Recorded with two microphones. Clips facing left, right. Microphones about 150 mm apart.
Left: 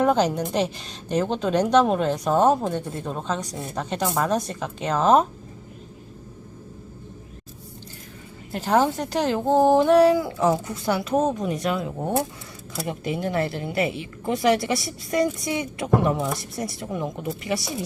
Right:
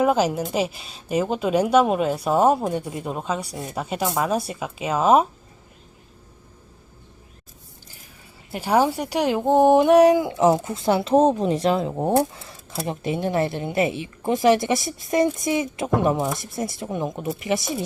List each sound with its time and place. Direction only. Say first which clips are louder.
0.0 s a woman's voice: right 1 dB; 5° right (ahead or behind)
8.5 s a woman's voice: right 1 dB; 10° right (ahead or behind)